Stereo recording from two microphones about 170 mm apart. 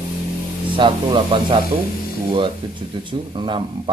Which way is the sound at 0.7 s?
30° right (ahead or behind).